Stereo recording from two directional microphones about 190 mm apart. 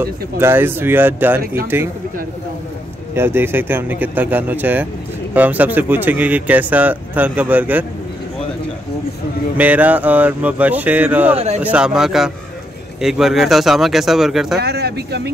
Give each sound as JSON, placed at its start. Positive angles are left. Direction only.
{"t": 0.0, "sound": "speech", "side_deg": -10}
{"t": 3.2, "sound": "speech", "side_deg": -10}
{"t": 9.6, "sound": "speech", "side_deg": -10}
{"t": 11.3, "sound": "speech", "side_deg": -35}
{"t": 11.6, "sound": "speech", "side_deg": -5}
{"t": 14.6, "sound": "speech", "side_deg": -60}